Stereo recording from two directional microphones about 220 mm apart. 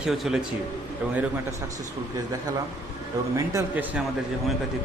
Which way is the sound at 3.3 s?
15° right (ahead or behind).